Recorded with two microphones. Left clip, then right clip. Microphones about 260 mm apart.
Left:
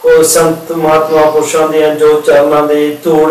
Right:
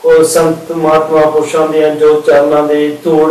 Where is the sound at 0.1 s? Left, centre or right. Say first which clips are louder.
Even; centre.